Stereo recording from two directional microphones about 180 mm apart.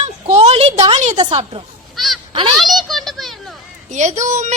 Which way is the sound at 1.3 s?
35° right (ahead or behind).